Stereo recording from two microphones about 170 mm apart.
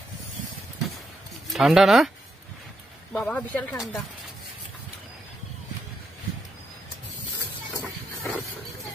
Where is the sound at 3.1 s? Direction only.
5° left (ahead or behind).